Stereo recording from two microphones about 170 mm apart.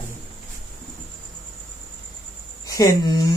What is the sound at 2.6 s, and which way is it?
Speech, 20° left (ahead or behind).